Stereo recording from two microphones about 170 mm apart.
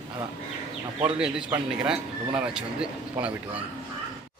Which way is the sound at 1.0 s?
5° right (ahead or behind).